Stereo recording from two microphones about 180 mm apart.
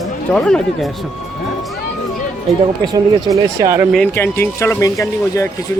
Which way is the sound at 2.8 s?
20° right (ahead or behind).